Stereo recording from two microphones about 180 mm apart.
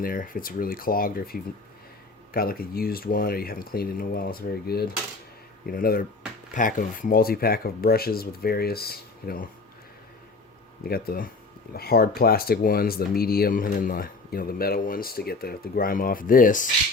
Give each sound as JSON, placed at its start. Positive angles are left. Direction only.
{"t": 0.0, "sound": "speech", "side_deg": 50}
{"t": 10.8, "sound": "speech", "side_deg": 55}